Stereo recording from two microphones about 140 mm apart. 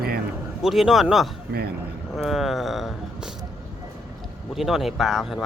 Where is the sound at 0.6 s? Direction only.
Centre (ahead or behind).